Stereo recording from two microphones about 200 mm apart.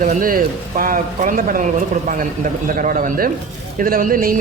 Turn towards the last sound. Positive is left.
turn(degrees=-45)  # may be behind; listen again after turning